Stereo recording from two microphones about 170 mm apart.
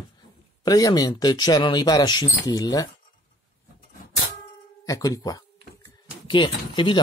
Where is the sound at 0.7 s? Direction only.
20° left (ahead or behind).